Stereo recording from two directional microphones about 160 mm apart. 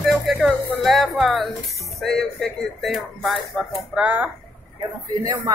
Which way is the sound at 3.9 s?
10° right (ahead or behind).